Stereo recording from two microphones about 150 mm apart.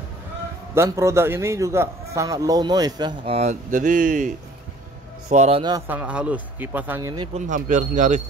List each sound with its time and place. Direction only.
0.7 s a man's voice: 20° right (ahead or behind)
3.3 s speech: 55° right (ahead or behind)
5.3 s a man's voice: 50° right (ahead or behind)
5.6 s a man's voice: 25° right (ahead or behind)
5.9 s speech: 10° right (ahead or behind)
7.0 s a man's voice: 20° right (ahead or behind)
7.3 s speech: 55° right (ahead or behind)